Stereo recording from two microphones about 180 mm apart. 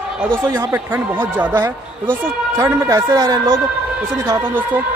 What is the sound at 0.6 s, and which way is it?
Speech, 10° right (ahead or behind).